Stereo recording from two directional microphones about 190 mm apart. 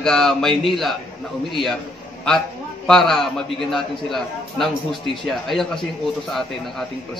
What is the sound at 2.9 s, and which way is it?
A man's voice, centre (ahead or behind).